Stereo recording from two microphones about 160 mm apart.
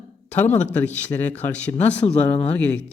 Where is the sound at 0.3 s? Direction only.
10° left (ahead or behind).